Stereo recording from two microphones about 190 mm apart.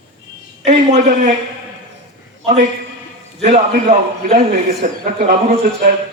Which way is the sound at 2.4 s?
40° right (ahead or behind).